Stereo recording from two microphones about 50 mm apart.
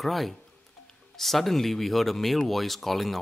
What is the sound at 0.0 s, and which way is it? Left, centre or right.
A man's voice, centre.